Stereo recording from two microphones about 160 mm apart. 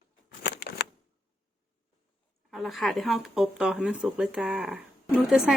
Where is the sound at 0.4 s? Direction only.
90° left.